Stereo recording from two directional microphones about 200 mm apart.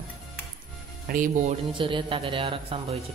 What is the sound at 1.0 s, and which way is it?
Speech, 40° right (ahead or behind).